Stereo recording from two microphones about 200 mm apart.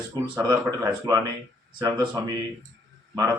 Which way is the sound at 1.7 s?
20° right (ahead or behind).